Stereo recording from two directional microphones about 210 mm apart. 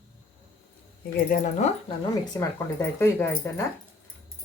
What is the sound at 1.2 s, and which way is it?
Speech, 40° left (ahead or behind).